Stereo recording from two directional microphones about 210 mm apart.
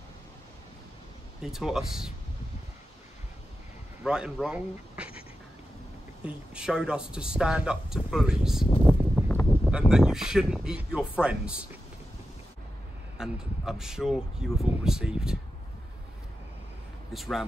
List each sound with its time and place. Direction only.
1.4 s speech: centre (ahead or behind)
4.0 s speech: 5° right (ahead or behind)
6.2 s speech: 5° right (ahead or behind)
8.8 s a sound: 10° left (ahead or behind)
9.7 s speech: 5° right (ahead or behind)
13.2 s speech: centre (ahead or behind)
17.1 s speech: centre (ahead or behind)